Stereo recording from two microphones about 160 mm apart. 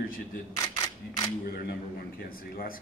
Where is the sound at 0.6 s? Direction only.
25° left (ahead or behind).